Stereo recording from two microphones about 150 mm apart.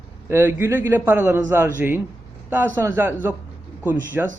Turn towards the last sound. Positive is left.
turn(degrees=-15)  # may be behind; listen again after turning